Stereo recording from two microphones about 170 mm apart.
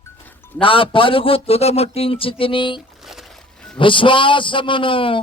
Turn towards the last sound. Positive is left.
turn(degrees=30)  # may be behind; listen again after turning